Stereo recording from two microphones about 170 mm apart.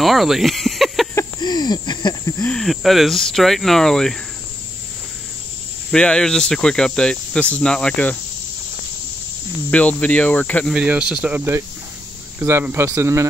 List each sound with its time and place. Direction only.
0.0 s snake: centre (ahead or behind)
1.1 s a sound: 25° left (ahead or behind)
2.4 s speech: 5° left (ahead or behind)
5.9 s speech: 5° left (ahead or behind)
9.7 s cricket: 10° left (ahead or behind)
10.7 s speech: 5° right (ahead or behind)